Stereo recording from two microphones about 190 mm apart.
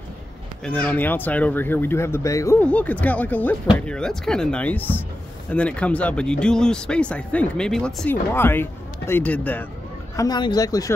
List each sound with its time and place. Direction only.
0.7 s speech: 10° left (ahead or behind)
10.1 s speech: 20° left (ahead or behind)